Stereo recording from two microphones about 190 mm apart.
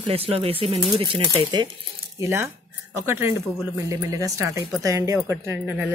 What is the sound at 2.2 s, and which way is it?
Speech, 15° right (ahead or behind).